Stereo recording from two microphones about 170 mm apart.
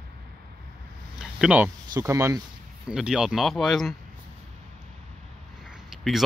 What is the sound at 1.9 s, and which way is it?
Speech, 15° right (ahead or behind).